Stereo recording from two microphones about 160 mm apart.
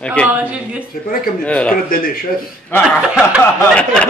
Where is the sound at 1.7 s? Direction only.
65° left (ahead or behind).